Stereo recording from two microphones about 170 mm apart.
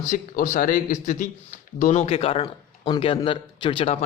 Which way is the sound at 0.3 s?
55° left (ahead or behind).